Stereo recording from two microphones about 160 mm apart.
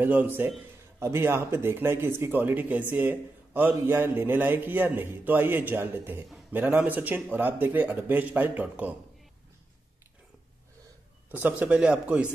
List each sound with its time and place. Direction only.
0.0 s a man's voice: 10° right (ahead or behind)
11.3 s a man's voice: 10° right (ahead or behind)